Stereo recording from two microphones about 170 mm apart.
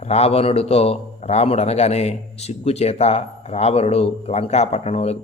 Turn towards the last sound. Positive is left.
turn(degrees=40)  # may be behind; listen again after turning